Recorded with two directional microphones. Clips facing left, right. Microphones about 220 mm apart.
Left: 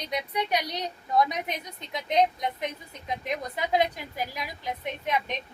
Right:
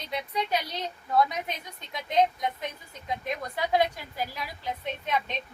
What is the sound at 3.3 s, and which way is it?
A woman's voice, 20° left (ahead or behind).